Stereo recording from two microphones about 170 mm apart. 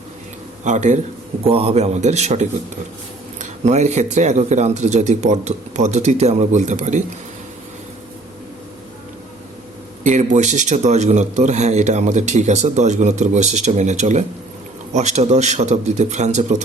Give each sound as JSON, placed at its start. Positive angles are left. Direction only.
{"t": 0.6, "sound": "a man's voice", "side_deg": -45}
{"t": 10.0, "sound": "a man's voice", "side_deg": -45}